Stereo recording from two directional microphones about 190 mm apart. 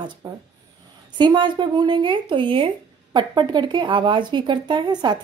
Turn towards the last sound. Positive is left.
turn(degrees=-20)  # may be behind; listen again after turning